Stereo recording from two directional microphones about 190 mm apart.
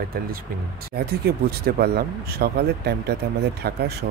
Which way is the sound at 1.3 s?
55° right (ahead or behind).